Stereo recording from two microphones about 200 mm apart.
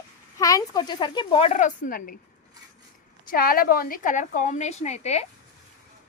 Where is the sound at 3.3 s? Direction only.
45° left (ahead or behind).